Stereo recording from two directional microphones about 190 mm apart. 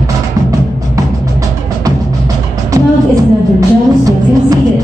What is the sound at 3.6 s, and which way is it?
Music, 20° right (ahead or behind).